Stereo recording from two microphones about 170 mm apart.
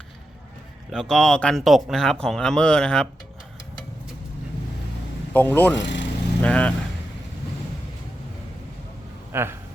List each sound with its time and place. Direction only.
0.9 s speech: 5° left (ahead or behind)
5.3 s speech: 10° left (ahead or behind)
5.7 s speech: 90° left
6.4 s speech: 5° left (ahead or behind)
9.3 s speech: 15° right (ahead or behind)